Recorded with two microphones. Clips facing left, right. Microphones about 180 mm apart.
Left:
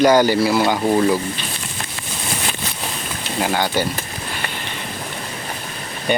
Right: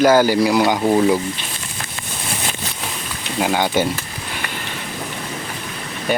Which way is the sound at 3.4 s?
15° right (ahead or behind).